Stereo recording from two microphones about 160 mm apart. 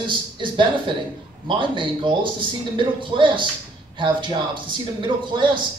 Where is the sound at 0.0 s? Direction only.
30° right (ahead or behind).